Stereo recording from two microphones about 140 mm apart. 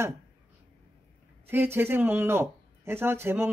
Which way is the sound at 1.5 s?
15° right (ahead or behind).